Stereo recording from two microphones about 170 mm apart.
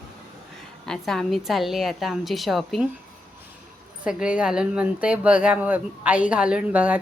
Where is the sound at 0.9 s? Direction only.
Centre (ahead or behind).